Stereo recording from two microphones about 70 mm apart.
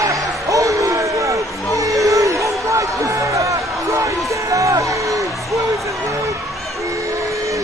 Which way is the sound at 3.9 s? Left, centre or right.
Right.